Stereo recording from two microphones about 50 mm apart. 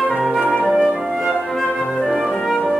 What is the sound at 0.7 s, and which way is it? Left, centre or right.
Music, centre.